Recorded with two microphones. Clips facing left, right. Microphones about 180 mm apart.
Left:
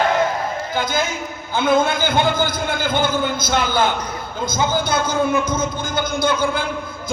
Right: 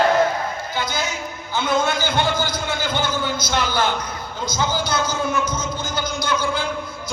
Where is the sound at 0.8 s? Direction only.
50° left (ahead or behind).